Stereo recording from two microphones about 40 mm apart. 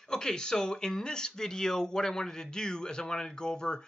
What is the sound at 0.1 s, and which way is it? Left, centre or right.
Speech, centre.